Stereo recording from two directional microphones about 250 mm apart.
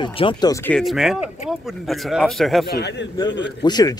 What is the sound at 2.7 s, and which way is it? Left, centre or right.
Speech, left.